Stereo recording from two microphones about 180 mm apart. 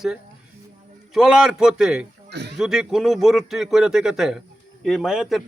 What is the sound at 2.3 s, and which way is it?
Speech, 70° right (ahead or behind).